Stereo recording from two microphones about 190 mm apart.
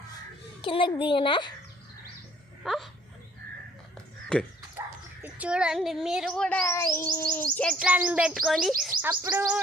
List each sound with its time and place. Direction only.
0.6 s a child's voice: 25° left (ahead or behind)
2.6 s speech: centre (ahead or behind)
4.3 s speech: 5° left (ahead or behind)
5.2 s speech: 5° right (ahead or behind)
7.9 s speech: 5° right (ahead or behind)